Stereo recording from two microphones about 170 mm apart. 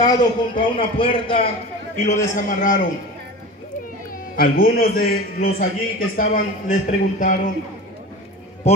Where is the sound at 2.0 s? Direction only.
45° left (ahead or behind).